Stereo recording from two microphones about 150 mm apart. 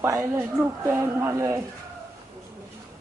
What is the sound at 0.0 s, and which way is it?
A woman's voice, 20° right (ahead or behind).